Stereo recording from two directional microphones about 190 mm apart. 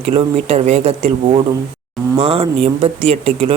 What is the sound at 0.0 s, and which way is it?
Speech, 30° right (ahead or behind).